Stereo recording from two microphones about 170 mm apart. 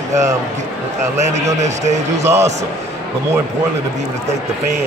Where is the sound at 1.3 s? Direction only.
40° right (ahead or behind).